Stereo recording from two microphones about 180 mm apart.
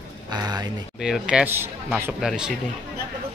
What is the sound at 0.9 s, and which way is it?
Speech, 5° right (ahead or behind).